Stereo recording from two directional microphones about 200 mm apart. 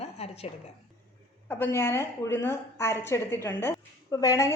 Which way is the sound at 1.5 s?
10° left (ahead or behind).